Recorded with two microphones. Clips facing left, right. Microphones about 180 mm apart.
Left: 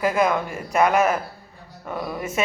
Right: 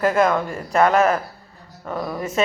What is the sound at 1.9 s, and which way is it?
Speech, 5° left (ahead or behind).